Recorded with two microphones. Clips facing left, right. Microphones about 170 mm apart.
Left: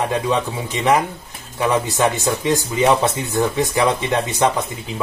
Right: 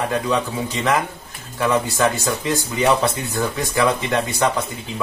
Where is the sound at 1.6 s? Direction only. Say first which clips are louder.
Left 1 dB; 20° left (ahead or behind).